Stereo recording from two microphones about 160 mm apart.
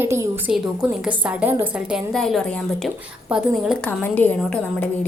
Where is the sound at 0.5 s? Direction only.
5° right (ahead or behind).